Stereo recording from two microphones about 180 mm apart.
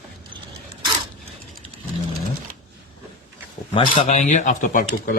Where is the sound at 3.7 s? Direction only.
30° left (ahead or behind); by 5.1 s 50° left (ahead or behind).